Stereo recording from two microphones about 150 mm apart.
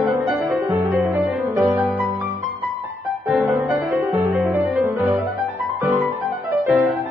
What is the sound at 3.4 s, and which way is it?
Music, 15° right (ahead or behind).